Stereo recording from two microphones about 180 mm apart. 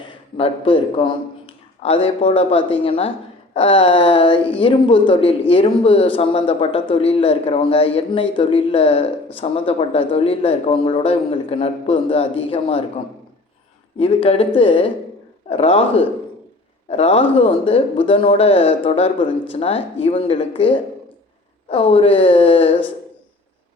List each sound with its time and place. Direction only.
0.0 s speech: 30° left (ahead or behind)
14.0 s speech: 30° left (ahead or behind)